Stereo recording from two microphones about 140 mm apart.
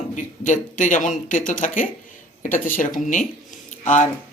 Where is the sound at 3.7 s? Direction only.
65° left (ahead or behind).